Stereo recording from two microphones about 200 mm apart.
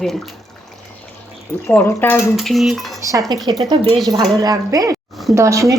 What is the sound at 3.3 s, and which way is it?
A woman's voice, 20° right (ahead or behind).